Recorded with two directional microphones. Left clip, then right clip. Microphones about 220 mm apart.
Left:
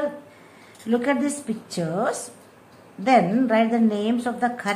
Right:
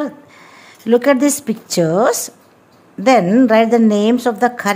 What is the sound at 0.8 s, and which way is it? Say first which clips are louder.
Speech: right 11 dB; 45° right (ahead or behind).